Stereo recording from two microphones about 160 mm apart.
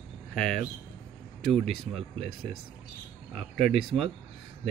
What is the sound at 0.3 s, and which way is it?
Speech, 5° left (ahead or behind).